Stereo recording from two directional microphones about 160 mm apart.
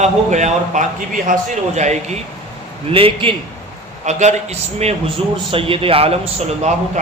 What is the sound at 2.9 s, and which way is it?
Speech, 35° right (ahead or behind).